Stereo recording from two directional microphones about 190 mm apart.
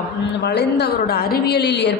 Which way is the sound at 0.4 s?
60° left (ahead or behind).